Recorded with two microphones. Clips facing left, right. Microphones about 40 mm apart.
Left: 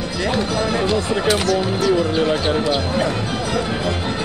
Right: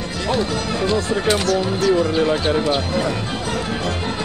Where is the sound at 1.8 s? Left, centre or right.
Left.